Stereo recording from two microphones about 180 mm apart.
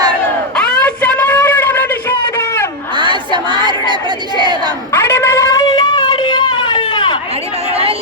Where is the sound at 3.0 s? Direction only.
25° right (ahead or behind).